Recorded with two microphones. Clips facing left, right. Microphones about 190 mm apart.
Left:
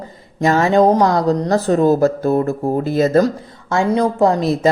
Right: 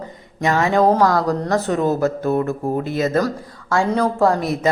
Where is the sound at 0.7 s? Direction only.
20° left (ahead or behind).